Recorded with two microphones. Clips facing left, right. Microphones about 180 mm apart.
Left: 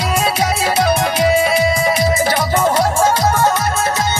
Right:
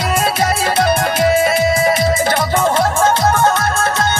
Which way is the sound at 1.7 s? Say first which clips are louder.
Right 2 dB; centre (ahead or behind).